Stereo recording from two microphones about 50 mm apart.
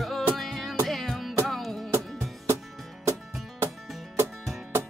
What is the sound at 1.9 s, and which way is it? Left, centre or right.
Music, right.